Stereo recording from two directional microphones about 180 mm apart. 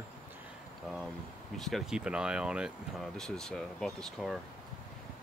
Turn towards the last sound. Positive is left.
turn(degrees=0)  # may be behind; listen again after turning